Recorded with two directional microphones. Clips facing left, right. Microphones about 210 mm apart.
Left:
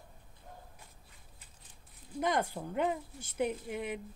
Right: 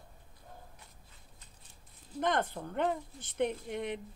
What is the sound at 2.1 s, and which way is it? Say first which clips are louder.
Speech: even; 10° left (ahead or behind).